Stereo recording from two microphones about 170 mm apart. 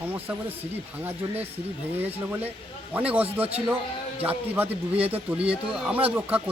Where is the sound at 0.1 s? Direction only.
10° right (ahead or behind).